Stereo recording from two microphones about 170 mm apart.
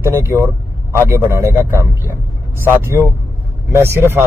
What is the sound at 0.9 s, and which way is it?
Speech, 15° right (ahead or behind).